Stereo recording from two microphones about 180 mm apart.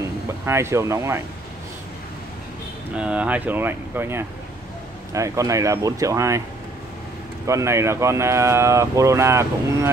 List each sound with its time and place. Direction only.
0.5 s speech: 15° right (ahead or behind)
3.0 s speech: 5° right (ahead or behind)
7.4 s speech: 15° right (ahead or behind)